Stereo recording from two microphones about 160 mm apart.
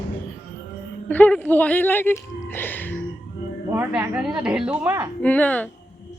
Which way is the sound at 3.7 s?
15° right (ahead or behind).